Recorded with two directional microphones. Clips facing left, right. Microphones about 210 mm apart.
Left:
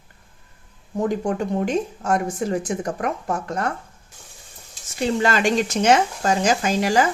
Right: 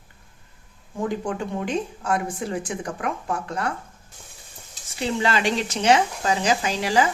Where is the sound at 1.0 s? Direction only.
45° left (ahead or behind).